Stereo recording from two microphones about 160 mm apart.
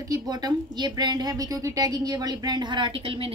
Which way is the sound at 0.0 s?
20° right (ahead or behind).